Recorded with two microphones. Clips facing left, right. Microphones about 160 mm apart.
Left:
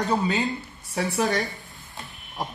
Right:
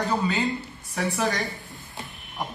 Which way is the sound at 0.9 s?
15° left (ahead or behind).